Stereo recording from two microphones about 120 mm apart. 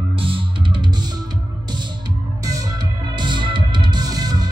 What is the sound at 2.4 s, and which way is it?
Music, 30° right (ahead or behind).